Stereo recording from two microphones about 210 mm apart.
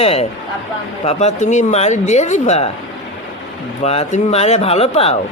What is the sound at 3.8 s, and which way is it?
Speech, 30° left (ahead or behind).